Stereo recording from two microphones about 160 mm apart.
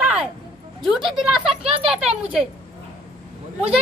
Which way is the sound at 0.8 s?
Centre (ahead or behind).